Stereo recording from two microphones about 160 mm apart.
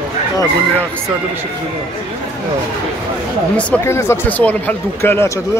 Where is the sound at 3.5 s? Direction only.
10° left (ahead or behind).